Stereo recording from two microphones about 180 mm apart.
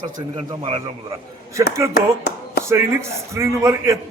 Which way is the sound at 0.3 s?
35° right (ahead or behind).